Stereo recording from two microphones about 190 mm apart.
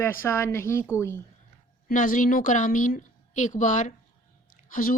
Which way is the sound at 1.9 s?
45° left (ahead or behind).